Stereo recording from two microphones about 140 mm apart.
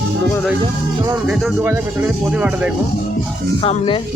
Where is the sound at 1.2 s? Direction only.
15° right (ahead or behind).